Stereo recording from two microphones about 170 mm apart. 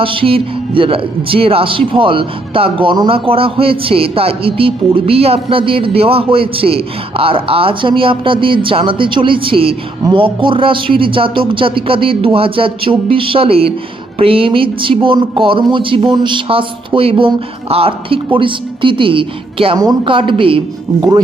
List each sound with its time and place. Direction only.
0.0 s speech: 30° right (ahead or behind)